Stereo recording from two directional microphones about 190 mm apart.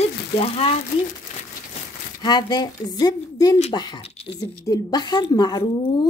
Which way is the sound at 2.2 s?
20° left (ahead or behind).